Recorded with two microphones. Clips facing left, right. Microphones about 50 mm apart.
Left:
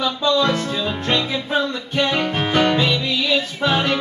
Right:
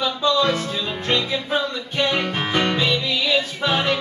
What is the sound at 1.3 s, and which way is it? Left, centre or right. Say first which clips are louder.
Music: left 2 dB; centre.